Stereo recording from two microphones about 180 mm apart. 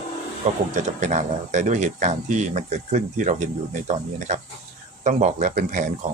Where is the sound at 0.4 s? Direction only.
40° right (ahead or behind).